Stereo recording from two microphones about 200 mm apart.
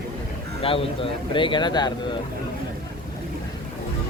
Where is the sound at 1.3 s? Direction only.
25° left (ahead or behind).